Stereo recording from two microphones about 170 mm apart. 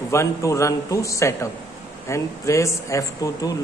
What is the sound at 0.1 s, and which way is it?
A man's voice, 20° left (ahead or behind).